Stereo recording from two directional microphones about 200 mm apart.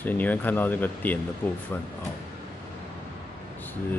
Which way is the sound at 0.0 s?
10° left (ahead or behind).